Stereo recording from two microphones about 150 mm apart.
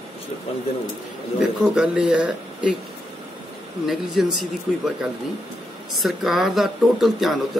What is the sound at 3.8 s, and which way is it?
Speech, centre (ahead or behind).